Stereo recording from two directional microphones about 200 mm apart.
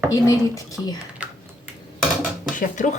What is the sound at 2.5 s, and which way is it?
Speech, 40° left (ahead or behind).